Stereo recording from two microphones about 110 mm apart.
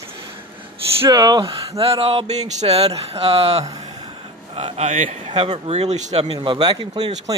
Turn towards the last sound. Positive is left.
turn(degrees=-40)  # may be behind; listen again after turning